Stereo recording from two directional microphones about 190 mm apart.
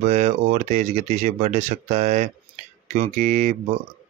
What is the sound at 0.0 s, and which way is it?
Speech, 40° right (ahead or behind).